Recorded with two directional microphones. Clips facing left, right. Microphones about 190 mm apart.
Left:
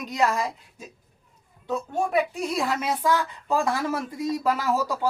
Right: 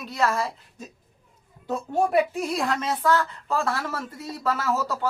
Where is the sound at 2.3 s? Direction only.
5° left (ahead or behind).